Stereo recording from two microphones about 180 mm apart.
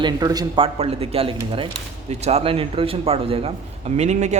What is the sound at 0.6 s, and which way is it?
Speech, 35° right (ahead or behind).